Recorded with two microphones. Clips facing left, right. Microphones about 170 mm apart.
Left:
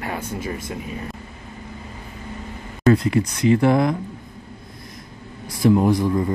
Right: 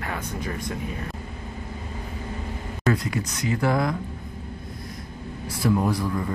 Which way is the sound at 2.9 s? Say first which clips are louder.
Left 9 dB; 25° left (ahead or behind).